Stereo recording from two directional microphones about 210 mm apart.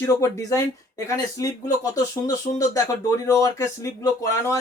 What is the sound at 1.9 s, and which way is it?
Speech, 15° left (ahead or behind).